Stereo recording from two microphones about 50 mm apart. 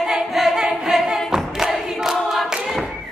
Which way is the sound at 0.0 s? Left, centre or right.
Centre.